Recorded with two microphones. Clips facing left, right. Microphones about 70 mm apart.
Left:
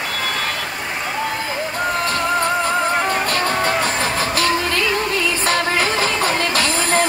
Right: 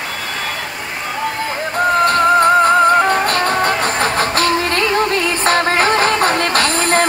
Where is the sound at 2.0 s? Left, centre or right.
Right.